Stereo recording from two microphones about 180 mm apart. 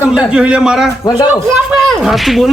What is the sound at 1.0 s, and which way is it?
Speech, 20° left (ahead or behind).